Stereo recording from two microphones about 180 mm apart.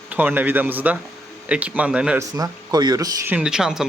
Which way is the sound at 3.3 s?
5° right (ahead or behind).